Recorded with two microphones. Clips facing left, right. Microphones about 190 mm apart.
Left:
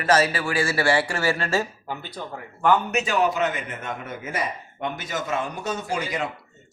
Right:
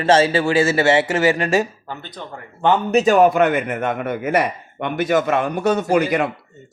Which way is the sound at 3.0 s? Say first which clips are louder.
Right 12 dB; 50° right (ahead or behind).